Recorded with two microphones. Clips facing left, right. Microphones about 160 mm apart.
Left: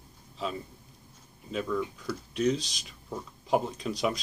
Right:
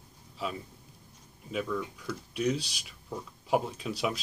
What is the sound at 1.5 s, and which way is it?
Speech, 5° right (ahead or behind).